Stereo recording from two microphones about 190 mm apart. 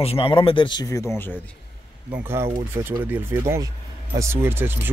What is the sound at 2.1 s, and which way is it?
Speech, 15° right (ahead or behind).